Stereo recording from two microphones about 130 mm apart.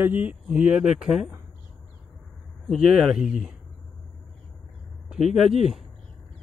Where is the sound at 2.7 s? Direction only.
Centre (ahead or behind).